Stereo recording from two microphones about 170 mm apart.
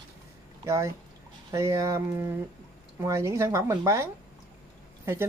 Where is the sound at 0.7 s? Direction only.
15° right (ahead or behind).